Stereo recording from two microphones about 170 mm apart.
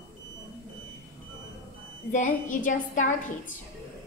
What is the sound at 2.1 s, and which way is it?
A woman's voice, 50° left (ahead or behind).